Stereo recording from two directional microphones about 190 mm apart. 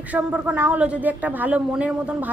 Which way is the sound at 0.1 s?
5° right (ahead or behind).